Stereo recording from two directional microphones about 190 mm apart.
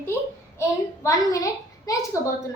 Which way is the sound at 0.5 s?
15° left (ahead or behind).